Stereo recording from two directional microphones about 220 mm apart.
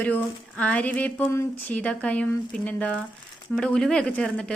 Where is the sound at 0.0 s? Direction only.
5° left (ahead or behind).